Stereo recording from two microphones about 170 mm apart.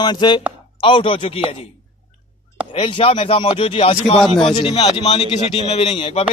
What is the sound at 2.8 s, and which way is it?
Speech, 30° left (ahead or behind).